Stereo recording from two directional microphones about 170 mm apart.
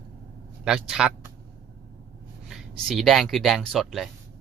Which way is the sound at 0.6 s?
5° right (ahead or behind).